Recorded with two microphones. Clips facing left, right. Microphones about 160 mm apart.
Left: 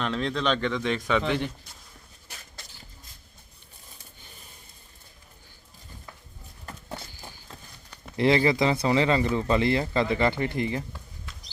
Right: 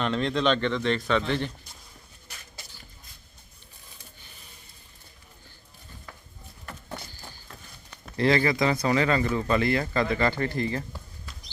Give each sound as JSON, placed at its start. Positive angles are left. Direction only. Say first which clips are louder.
{"t": 0.0, "sound": "a man's voice", "louder": "right 2 dB", "side_deg": 0}
{"t": 7.1, "sound": "run", "louder": "left 1 dB", "side_deg": 15}
{"t": 8.1, "sound": "speech", "louder": "left 1 dB", "side_deg": 20}